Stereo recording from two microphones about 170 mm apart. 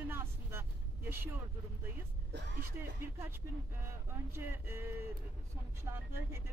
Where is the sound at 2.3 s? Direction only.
70° right (ahead or behind).